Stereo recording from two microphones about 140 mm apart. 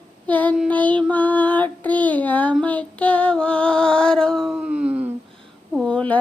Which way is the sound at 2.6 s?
10° left (ahead or behind).